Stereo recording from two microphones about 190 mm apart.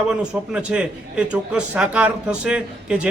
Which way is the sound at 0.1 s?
5° right (ahead or behind).